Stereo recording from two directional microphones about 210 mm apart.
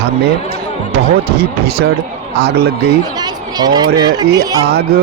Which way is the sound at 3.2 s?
20° right (ahead or behind).